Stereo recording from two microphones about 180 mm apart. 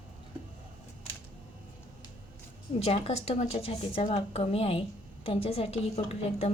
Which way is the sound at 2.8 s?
35° left (ahead or behind).